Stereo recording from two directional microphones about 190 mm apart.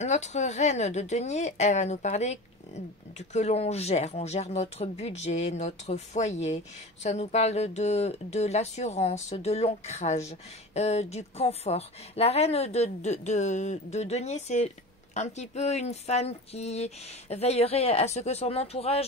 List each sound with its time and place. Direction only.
0.0 s speech: 35° left (ahead or behind)